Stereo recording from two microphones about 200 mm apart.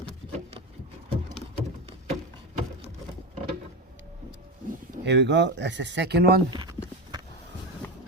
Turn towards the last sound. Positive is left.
turn(degrees=-25)  # may be behind; listen again after turning